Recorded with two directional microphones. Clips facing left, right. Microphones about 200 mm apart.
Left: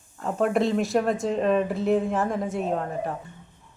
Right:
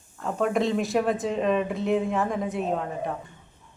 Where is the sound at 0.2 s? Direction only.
Centre (ahead or behind).